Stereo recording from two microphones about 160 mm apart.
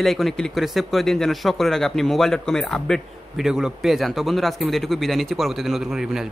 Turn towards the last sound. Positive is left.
turn(degrees=-5)  # may be behind; listen again after turning